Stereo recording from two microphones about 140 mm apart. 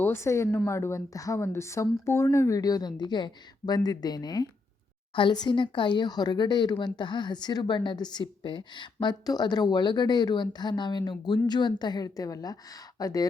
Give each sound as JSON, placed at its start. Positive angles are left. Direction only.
{"t": 0.0, "sound": "speech", "side_deg": 15}